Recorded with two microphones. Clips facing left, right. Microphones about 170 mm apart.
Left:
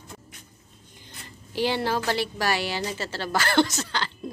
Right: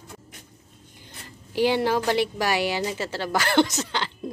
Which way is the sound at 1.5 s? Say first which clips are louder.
Right 4 dB; 15° right (ahead or behind).